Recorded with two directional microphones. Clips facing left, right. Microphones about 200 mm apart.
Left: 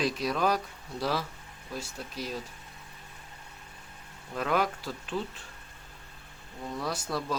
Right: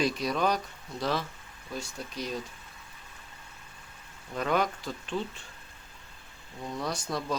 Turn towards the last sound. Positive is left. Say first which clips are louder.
# even
turn(degrees=5)  # may be behind; listen again after turning